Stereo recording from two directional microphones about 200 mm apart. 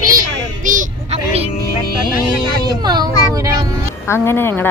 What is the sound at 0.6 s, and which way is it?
Speech, 40° right (ahead or behind).